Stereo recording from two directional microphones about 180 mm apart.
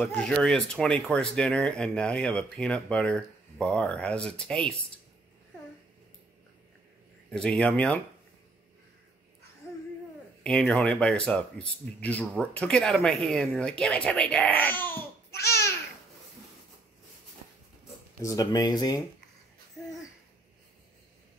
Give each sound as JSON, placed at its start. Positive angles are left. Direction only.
{"t": 0.0, "sound": "speech", "side_deg": 5}
{"t": 7.2, "sound": "speech", "side_deg": 5}
{"t": 10.4, "sound": "speech", "side_deg": 5}
{"t": 18.2, "sound": "speech", "side_deg": 20}